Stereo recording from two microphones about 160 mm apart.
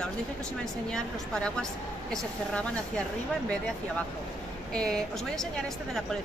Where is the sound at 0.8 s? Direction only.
5° left (ahead or behind).